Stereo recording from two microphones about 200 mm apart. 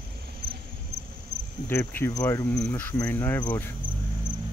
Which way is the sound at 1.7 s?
10° left (ahead or behind).